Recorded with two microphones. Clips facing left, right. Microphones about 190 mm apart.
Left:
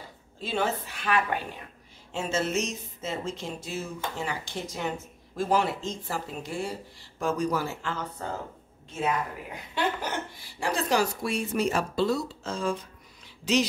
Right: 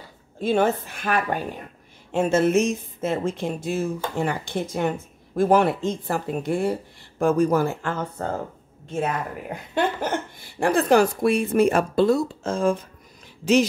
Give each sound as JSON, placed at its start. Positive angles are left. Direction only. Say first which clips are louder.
{"t": 0.4, "sound": "speech", "louder": "right 8 dB", "side_deg": -50}
{"t": 2.1, "sound": "speech", "louder": "right 9 dB", "side_deg": -55}